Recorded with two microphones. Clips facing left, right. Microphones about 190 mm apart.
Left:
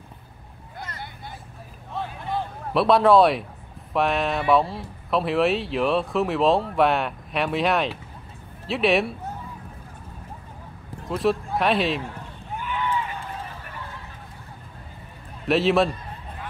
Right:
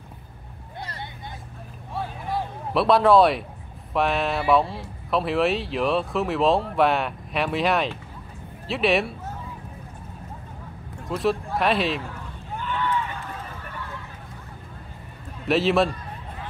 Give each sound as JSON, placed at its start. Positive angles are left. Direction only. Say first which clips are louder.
{"t": 0.7, "sound": "vehicle", "louder": "right 1 dB", "side_deg": -25}
{"t": 2.0, "sound": "a sound", "louder": "even", "side_deg": -5}
{"t": 3.9, "sound": "speech", "louder": "even", "side_deg": 0}
{"t": 11.1, "sound": "speech", "louder": "left 1 dB", "side_deg": 0}
{"t": 12.5, "sound": "run", "louder": "right 1 dB", "side_deg": 10}
{"t": 15.4, "sound": "speech", "louder": "left 1 dB", "side_deg": 0}